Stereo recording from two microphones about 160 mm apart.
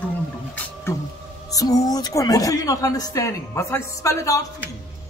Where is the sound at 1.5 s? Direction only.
20° left (ahead or behind).